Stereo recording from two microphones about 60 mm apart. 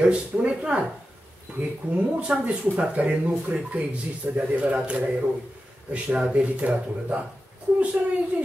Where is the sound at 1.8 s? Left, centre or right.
Right.